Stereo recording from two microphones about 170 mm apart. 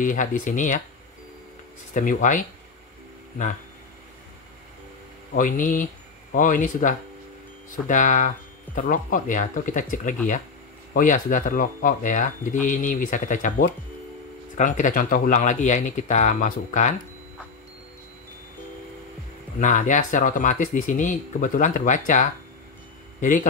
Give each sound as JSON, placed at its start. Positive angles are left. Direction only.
{"t": 0.0, "sound": "speech", "side_deg": 50}
{"t": 2.0, "sound": "speech", "side_deg": 50}
{"t": 5.3, "sound": "speech", "side_deg": 50}
{"t": 19.6, "sound": "speech", "side_deg": 45}